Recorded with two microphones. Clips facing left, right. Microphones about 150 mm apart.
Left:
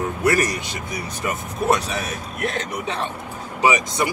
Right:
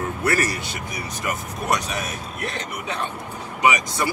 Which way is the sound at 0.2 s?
15° left (ahead or behind).